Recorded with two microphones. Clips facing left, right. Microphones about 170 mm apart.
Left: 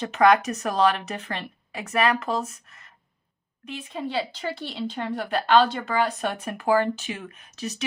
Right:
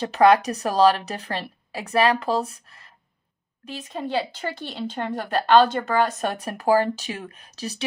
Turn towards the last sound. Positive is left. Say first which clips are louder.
# even
turn(degrees=-35)  # may be behind; listen again after turning